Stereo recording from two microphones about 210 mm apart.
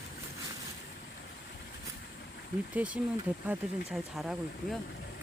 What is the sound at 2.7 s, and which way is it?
Speech, 5° right (ahead or behind).